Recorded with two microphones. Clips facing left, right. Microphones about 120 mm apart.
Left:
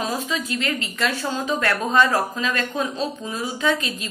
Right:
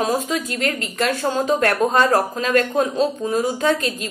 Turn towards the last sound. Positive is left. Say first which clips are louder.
# right 3 dB
turn(degrees=-45)  # may be behind; listen again after turning